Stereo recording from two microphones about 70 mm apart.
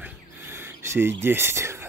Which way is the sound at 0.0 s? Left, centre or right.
Right.